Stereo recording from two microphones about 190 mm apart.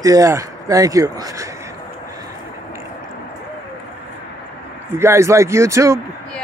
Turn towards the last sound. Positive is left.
turn(degrees=-15)  # may be behind; listen again after turning